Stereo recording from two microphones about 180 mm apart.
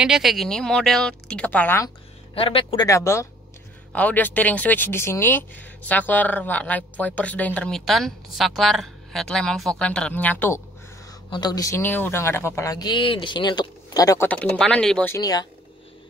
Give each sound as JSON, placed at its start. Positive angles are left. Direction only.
{"t": 0.0, "sound": "speech", "side_deg": 0}
{"t": 2.3, "sound": "speech", "side_deg": 30}
{"t": 11.2, "sound": "speech", "side_deg": 25}
{"t": 14.2, "sound": "speech", "side_deg": 5}
{"t": 15.1, "sound": "speech", "side_deg": 20}